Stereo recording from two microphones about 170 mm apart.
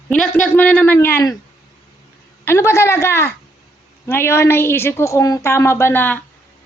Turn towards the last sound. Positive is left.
turn(degrees=10)  # may be behind; listen again after turning